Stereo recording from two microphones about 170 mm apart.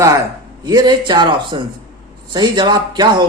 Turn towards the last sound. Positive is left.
turn(degrees=-25)  # may be behind; listen again after turning